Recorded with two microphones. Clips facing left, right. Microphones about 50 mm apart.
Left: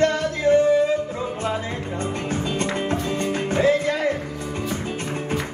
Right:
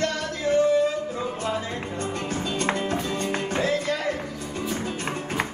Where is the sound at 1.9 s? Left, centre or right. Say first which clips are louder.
Left 4 dB; left.